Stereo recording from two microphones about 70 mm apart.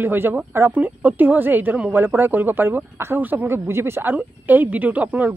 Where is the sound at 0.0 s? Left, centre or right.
Right.